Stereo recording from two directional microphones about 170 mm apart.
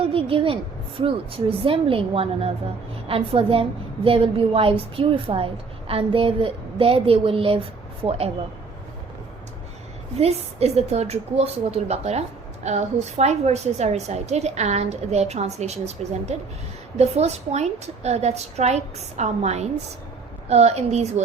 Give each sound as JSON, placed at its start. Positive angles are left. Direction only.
{"t": 0.0, "sound": "a sound", "side_deg": -35}
{"t": 0.9, "sound": "a woman's voice", "side_deg": -30}
{"t": 10.2, "sound": "a woman's voice", "side_deg": -40}